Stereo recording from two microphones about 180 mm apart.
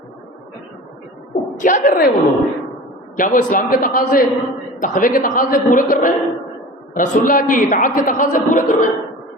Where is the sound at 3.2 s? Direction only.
50° left (ahead or behind).